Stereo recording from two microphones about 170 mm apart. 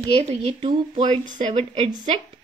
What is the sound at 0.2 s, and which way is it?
Speech, 40° right (ahead or behind).